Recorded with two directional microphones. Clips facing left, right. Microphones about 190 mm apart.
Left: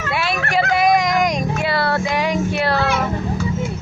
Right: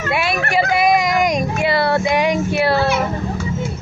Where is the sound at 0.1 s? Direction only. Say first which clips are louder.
Right 2 dB; 15° right (ahead or behind).